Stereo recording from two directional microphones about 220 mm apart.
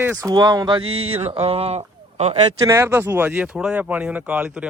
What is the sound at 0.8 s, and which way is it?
Speech, 70° right (ahead or behind).